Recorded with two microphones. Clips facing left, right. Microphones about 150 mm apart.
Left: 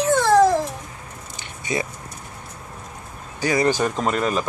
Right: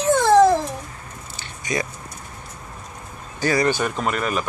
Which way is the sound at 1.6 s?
25° left (ahead or behind).